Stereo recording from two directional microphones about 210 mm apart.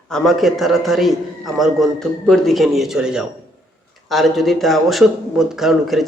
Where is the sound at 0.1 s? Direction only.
Centre (ahead or behind).